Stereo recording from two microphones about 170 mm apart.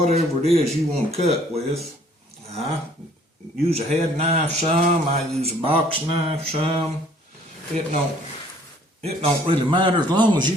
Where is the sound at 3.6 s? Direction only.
40° right (ahead or behind).